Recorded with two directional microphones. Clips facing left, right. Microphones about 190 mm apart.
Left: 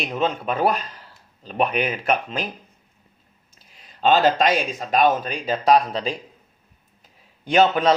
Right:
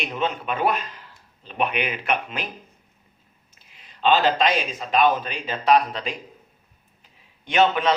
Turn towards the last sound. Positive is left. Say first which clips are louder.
# left 2 dB
turn(degrees=35)  # may be behind; listen again after turning